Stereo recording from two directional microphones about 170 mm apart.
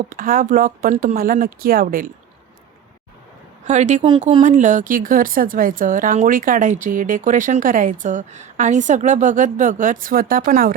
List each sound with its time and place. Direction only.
0.1 s speech: 50° right (ahead or behind)
3.7 s speech: 45° right (ahead or behind)